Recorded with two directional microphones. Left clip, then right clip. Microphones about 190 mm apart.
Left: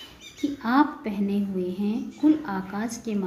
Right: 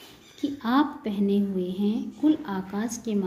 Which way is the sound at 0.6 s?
15° right (ahead or behind).